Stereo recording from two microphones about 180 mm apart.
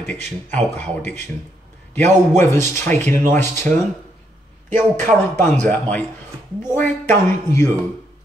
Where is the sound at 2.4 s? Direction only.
15° left (ahead or behind).